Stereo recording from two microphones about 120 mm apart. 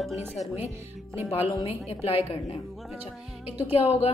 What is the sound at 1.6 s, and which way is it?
A woman's voice, 55° left (ahead or behind).